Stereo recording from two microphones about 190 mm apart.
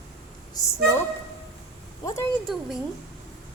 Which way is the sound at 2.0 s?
15° left (ahead or behind).